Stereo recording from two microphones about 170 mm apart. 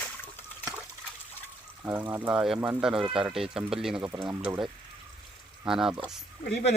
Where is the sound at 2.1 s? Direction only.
10° right (ahead or behind).